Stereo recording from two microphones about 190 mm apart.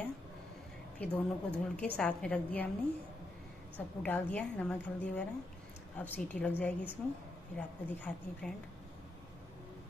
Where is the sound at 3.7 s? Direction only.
10° left (ahead or behind).